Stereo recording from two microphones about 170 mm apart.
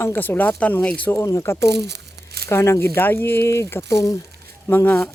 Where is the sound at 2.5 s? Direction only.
15° left (ahead or behind).